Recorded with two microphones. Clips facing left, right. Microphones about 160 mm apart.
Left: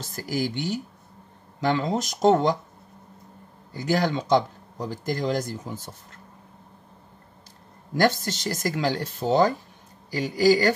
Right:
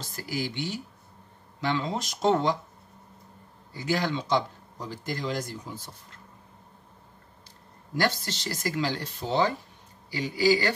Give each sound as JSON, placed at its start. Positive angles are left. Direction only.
{"t": 0.0, "sound": "speech", "side_deg": 45}
{"t": 3.7, "sound": "speech", "side_deg": 45}
{"t": 8.0, "sound": "speech", "side_deg": 45}